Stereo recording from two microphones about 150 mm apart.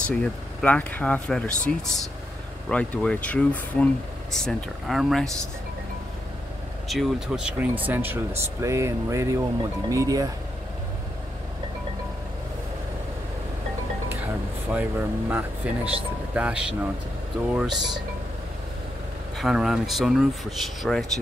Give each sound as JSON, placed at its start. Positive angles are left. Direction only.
{"t": 0.0, "sound": "speech", "side_deg": 5}
{"t": 6.9, "sound": "speech", "side_deg": 0}
{"t": 14.7, "sound": "speech", "side_deg": -10}
{"t": 19.3, "sound": "speech", "side_deg": -5}